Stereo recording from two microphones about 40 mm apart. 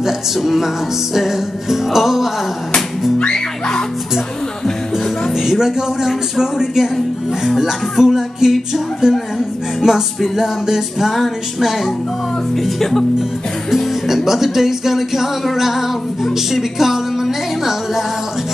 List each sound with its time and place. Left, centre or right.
0.0 s music: centre
3.2 s music: left
5.3 s music: centre
12.6 s speech: centre
13.7 s music: centre